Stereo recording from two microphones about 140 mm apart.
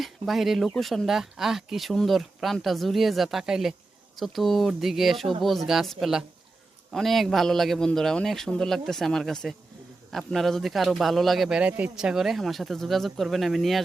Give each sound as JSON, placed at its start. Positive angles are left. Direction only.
{"t": 0.0, "sound": "a man's voice", "side_deg": 0}